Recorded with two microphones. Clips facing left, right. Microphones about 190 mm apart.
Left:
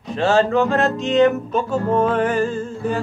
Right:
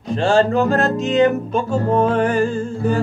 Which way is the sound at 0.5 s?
35° right (ahead or behind).